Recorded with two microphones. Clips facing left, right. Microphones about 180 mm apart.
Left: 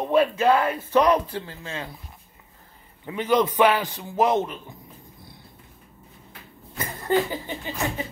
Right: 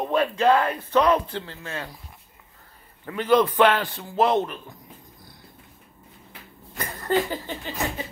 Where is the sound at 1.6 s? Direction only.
25° left (ahead or behind).